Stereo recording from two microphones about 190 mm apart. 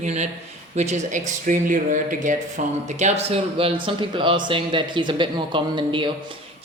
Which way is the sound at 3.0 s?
30° right (ahead or behind).